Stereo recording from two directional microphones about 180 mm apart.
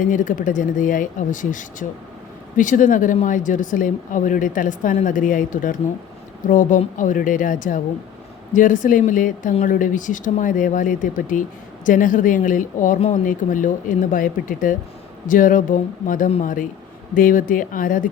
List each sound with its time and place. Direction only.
0.0 s speech: 45° left (ahead or behind)